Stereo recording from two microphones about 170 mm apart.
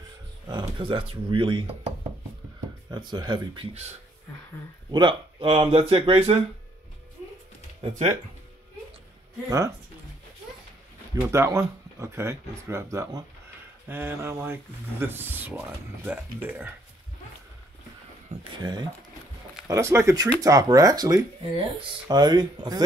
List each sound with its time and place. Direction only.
0.5 s speech: 30° right (ahead or behind)
2.9 s speech: 25° right (ahead or behind)
4.9 s speech: 30° right (ahead or behind)
11.1 s speech: 15° right (ahead or behind)
18.6 s speech: 25° right (ahead or behind)
19.7 s speech: 15° right (ahead or behind)